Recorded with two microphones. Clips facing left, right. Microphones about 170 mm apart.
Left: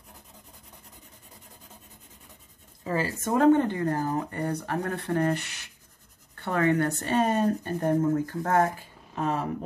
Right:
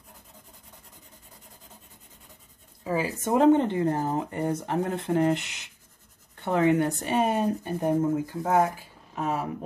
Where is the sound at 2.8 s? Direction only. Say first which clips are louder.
Right 1 dB; 10° right (ahead or behind).